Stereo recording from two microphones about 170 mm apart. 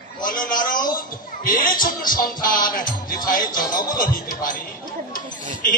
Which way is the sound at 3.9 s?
55° left (ahead or behind).